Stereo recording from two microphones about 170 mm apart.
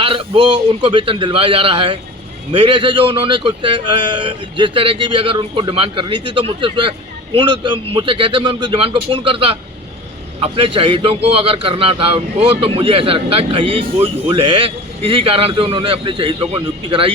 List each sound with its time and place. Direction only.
0.0 s a man's voice: 30° right (ahead or behind)